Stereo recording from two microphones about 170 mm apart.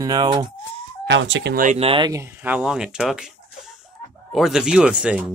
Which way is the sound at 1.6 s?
40° right (ahead or behind).